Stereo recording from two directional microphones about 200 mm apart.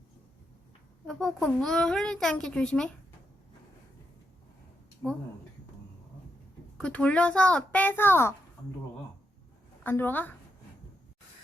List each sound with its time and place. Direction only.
1.0 s a child's voice: 5° left (ahead or behind)
6.7 s a child's voice: 5° left (ahead or behind)
9.8 s a child's voice: 10° left (ahead or behind)